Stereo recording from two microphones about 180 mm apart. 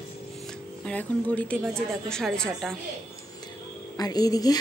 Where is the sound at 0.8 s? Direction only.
10° left (ahead or behind).